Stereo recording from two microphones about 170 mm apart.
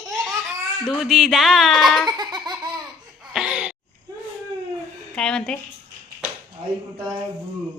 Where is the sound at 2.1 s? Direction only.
25° right (ahead or behind).